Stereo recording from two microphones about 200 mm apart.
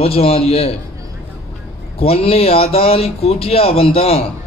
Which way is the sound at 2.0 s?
30° left (ahead or behind).